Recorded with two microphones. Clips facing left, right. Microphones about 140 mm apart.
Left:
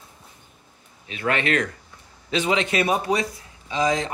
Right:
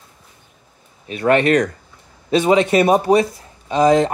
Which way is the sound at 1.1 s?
40° right (ahead or behind).